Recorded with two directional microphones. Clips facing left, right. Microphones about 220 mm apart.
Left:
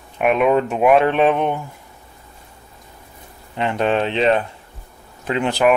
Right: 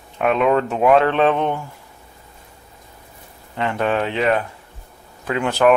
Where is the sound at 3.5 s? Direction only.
20° left (ahead or behind).